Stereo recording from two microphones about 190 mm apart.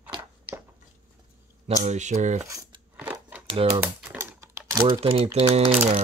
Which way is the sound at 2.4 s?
15° right (ahead or behind).